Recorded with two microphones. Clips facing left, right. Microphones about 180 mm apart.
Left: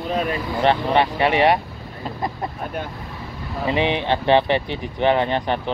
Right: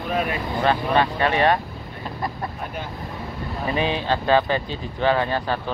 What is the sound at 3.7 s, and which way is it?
Speech, 20° left (ahead or behind).